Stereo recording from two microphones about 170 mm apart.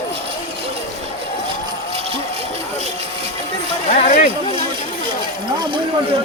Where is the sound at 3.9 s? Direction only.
45° left (ahead or behind).